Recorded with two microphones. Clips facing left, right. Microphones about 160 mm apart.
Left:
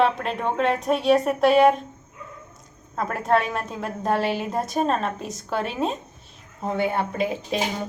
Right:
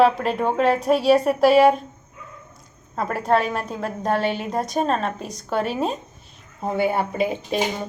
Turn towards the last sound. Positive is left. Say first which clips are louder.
# right 2 dB
turn(degrees=0)  # may be behind; listen again after turning